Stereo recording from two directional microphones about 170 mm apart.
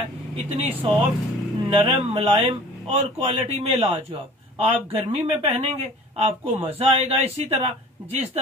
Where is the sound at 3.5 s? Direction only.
35° right (ahead or behind).